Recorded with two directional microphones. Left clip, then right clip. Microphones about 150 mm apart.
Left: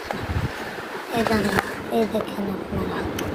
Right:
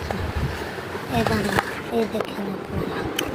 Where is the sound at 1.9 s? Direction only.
25° left (ahead or behind).